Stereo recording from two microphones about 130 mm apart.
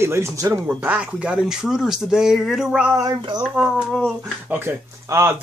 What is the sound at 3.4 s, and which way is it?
Speech, centre (ahead or behind).